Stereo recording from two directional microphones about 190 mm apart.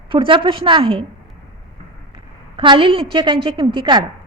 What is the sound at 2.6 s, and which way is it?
A woman's voice, 25° right (ahead or behind).